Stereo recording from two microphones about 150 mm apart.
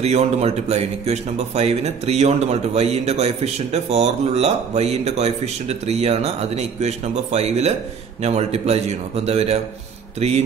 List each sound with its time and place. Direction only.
0.0 s a man's voice: 45° right (ahead or behind)